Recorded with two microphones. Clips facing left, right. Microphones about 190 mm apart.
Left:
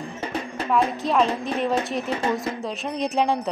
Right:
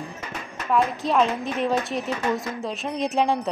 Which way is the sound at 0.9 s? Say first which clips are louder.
Even; centre (ahead or behind).